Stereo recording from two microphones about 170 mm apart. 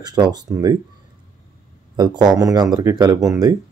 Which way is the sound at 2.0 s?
25° right (ahead or behind).